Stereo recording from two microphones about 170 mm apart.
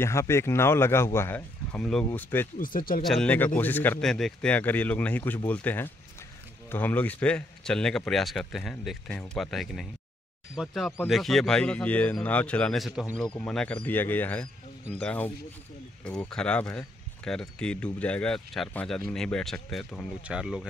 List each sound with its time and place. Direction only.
0.0 s speech: 15° left (ahead or behind)
2.6 s speech: 55° left (ahead or behind)
3.0 s a man's voice: centre (ahead or behind)